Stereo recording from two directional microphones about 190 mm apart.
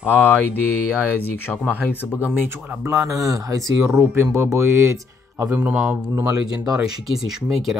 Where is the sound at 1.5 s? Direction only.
5° left (ahead or behind).